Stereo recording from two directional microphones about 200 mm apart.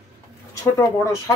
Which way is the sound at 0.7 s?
15° left (ahead or behind).